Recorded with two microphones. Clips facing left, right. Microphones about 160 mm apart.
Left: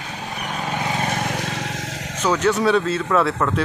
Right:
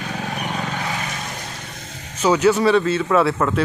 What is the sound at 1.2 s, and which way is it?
Vehicle, 75° left (ahead or behind).